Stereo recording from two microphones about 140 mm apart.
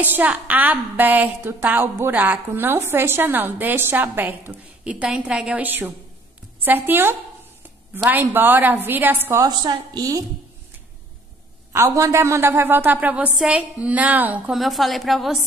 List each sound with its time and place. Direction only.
0.0 s a woman's voice: 15° right (ahead or behind)
9.4 s a woman's voice: 30° right (ahead or behind)
11.7 s a woman's voice: 20° right (ahead or behind); by 15.4 s centre (ahead or behind)